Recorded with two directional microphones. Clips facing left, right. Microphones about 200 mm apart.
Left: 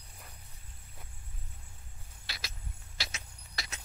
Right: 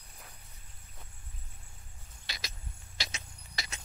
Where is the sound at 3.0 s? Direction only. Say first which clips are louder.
Right 1 dB; centre (ahead or behind).